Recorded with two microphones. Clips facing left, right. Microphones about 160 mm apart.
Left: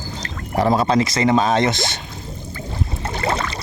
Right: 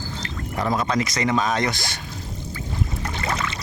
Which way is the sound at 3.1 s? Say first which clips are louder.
Left 7 dB; 35° left (ahead or behind).